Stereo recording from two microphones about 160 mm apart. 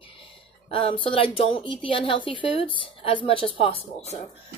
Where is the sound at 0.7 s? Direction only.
35° left (ahead or behind).